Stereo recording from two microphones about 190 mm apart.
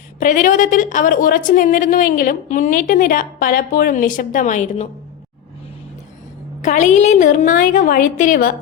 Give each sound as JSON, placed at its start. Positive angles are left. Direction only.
{"t": 0.2, "sound": "a woman's voice", "side_deg": 45}
{"t": 6.6, "sound": "a woman's voice", "side_deg": 40}